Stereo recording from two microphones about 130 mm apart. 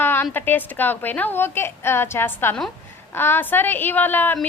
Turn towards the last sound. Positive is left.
turn(degrees=15)  # may be behind; listen again after turning